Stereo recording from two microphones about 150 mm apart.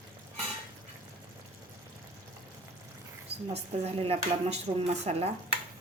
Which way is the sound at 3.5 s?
45° right (ahead or behind).